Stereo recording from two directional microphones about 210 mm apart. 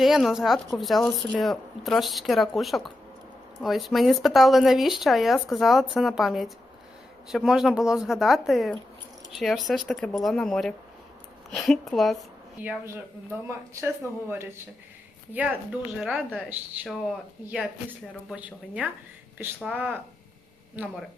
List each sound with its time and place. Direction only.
0.0 s a woman's voice: centre (ahead or behind)
13.8 s a woman's voice: 10° right (ahead or behind)
18.3 s a woman's voice: 5° right (ahead or behind)